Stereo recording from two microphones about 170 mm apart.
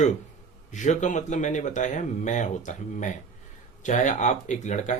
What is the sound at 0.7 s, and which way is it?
Speech, 45° left (ahead or behind).